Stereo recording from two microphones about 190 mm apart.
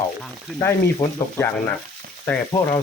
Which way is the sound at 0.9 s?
15° left (ahead or behind).